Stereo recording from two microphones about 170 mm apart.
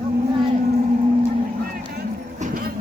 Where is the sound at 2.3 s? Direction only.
45° right (ahead or behind).